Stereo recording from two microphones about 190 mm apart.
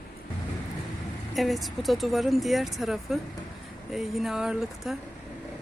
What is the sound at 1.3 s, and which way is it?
Speech, centre (ahead or behind).